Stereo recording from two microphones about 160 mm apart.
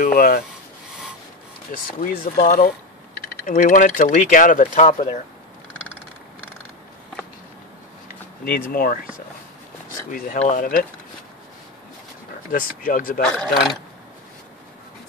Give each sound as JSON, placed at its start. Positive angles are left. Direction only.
{"t": 0.0, "sound": "speech", "side_deg": 65}
{"t": 1.7, "sound": "speech", "side_deg": 60}
{"t": 2.3, "sound": "speech", "side_deg": 50}
{"t": 3.3, "sound": "speech", "side_deg": 60}
{"t": 8.5, "sound": "speech", "side_deg": 65}
{"t": 10.5, "sound": "speech", "side_deg": 60}
{"t": 12.4, "sound": "speech", "side_deg": 60}
{"t": 13.2, "sound": "speech", "side_deg": 5}